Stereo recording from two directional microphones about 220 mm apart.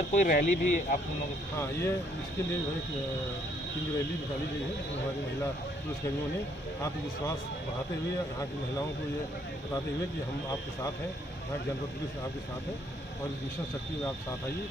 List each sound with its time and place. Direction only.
0.1 s speech: 35° left (ahead or behind)
1.6 s speech: 10° left (ahead or behind)